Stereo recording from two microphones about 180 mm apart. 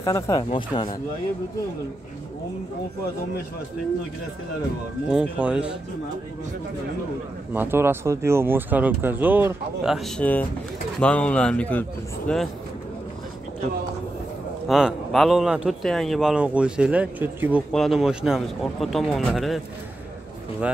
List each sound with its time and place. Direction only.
0.0 s speech: 20° left (ahead or behind)
5.1 s speech: 5° right (ahead or behind)
7.5 s speech: 10° right (ahead or behind)
9.9 s speech: centre (ahead or behind)
14.7 s speech: centre (ahead or behind)